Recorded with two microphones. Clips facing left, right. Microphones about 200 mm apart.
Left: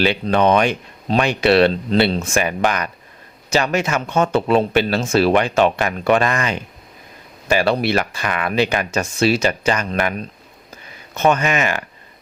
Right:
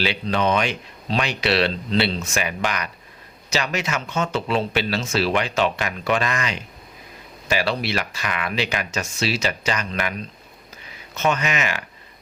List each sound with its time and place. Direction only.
0.0 s speech: 55° left (ahead or behind)